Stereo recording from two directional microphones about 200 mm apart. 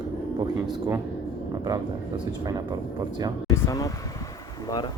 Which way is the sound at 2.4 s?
20° right (ahead or behind).